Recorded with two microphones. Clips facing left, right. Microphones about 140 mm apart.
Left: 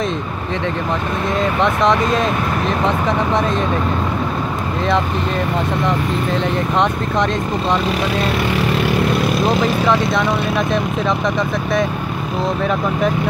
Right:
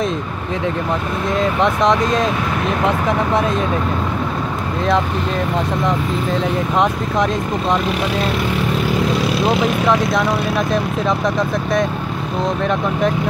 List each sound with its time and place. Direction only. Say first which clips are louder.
1.3 s speech: right 1 dB; centre (ahead or behind)
5.9 s speech: even; centre (ahead or behind)
8.5 s vehicle: left 1 dB; 80° left
9.4 s speech: even; centre (ahead or behind)